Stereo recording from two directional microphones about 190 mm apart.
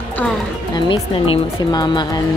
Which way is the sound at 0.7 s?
25° left (ahead or behind).